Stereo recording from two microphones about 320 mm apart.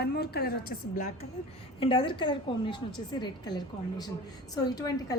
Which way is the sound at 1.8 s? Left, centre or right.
Centre.